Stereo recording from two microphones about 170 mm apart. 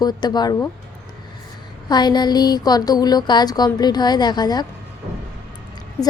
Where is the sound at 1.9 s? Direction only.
25° left (ahead or behind).